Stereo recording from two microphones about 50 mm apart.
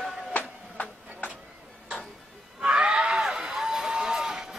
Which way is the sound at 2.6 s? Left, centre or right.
Right.